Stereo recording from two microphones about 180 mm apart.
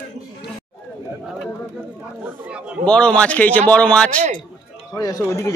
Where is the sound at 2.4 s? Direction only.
5° right (ahead or behind).